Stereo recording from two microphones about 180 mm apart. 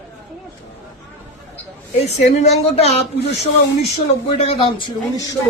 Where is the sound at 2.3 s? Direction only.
35° left (ahead or behind).